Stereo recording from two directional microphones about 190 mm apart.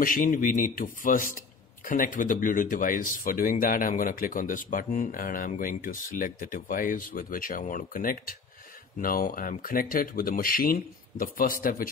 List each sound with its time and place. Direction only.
0.0 s speech: 45° left (ahead or behind)